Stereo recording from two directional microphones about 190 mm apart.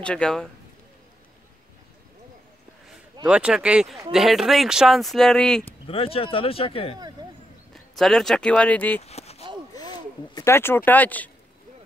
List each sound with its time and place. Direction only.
0.0 s speech: 5° left (ahead or behind)
3.3 s speech: 5° right (ahead or behind)
5.9 s speech: 30° left (ahead or behind)
7.7 s speech: centre (ahead or behind)
9.0 s a sound: 35° left (ahead or behind)
9.8 s speech: 20° left (ahead or behind)